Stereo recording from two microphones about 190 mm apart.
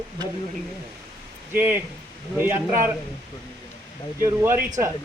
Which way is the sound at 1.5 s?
10° right (ahead or behind).